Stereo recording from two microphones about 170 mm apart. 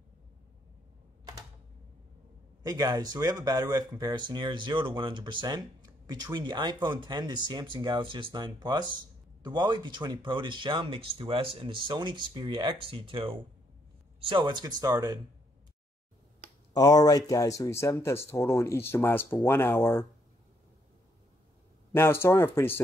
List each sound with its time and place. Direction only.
2.6 s speech: 20° right (ahead or behind)
16.7 s speech: 20° left (ahead or behind)
21.9 s speech: 15° left (ahead or behind)